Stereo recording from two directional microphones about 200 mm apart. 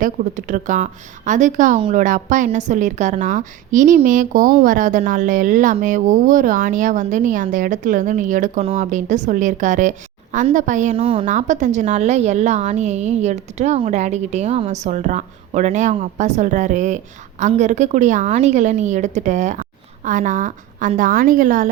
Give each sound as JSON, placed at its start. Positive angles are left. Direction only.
{"t": 0.0, "sound": "a woman's voice", "side_deg": -40}